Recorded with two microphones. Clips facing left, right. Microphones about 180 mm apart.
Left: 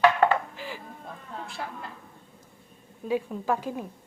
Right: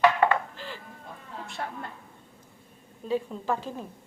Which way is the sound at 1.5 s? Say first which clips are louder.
Right 4 dB; centre (ahead or behind).